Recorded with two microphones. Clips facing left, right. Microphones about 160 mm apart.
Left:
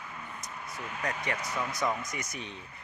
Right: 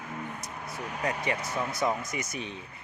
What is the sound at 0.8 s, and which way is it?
Speech, 40° right (ahead or behind).